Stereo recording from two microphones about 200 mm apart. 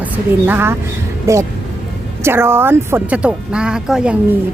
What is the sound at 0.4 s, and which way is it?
Speech, 10° right (ahead or behind).